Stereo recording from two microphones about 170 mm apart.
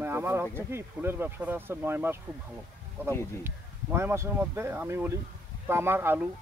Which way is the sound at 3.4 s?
15° right (ahead or behind).